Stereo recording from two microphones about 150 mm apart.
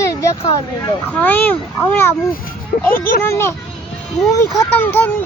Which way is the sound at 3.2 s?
15° left (ahead or behind).